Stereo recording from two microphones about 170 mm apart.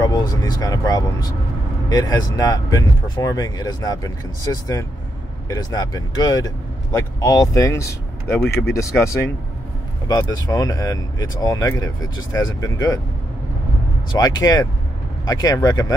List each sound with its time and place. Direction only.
0.0 s speech: 25° left (ahead or behind)
14.1 s speech: 20° left (ahead or behind)